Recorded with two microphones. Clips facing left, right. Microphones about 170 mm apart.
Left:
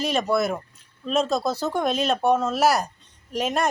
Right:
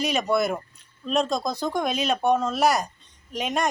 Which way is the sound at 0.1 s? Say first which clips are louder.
Left 2 dB; centre (ahead or behind).